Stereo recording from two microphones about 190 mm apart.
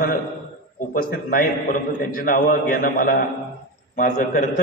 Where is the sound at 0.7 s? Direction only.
45° left (ahead or behind).